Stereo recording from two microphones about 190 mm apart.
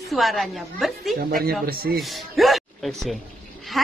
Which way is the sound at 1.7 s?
50° right (ahead or behind).